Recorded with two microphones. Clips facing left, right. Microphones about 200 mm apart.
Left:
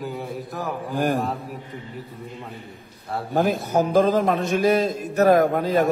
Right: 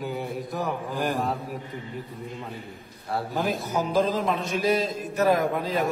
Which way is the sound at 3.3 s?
55° left (ahead or behind).